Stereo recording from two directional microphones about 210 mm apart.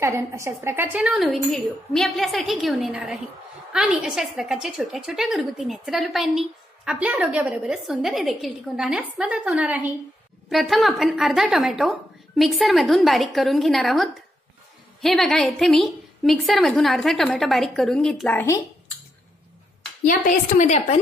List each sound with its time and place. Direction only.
0.0 s a woman's voice: 15° right (ahead or behind); by 18.6 s 10° left (ahead or behind)
20.1 s a woman's voice: 40° left (ahead or behind)